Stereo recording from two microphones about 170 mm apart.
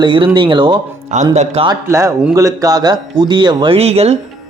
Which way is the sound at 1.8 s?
20° right (ahead or behind).